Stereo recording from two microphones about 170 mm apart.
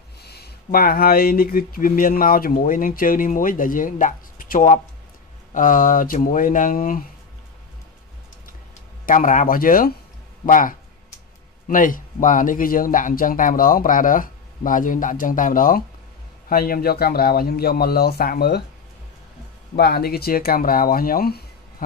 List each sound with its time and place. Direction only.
0.2 s speech: 70° left (ahead or behind); by 7.1 s 55° left (ahead or behind)
9.0 s speech: 50° left (ahead or behind)
19.7 s speech: 70° left (ahead or behind)